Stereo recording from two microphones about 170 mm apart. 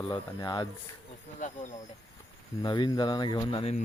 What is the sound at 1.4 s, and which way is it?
Speech, 45° left (ahead or behind).